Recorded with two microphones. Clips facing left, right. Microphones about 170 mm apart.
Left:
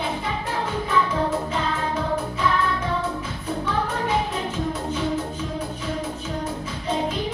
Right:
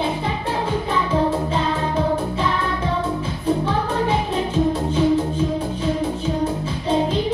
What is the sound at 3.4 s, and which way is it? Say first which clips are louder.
Music: right 5 dB; 30° right (ahead or behind).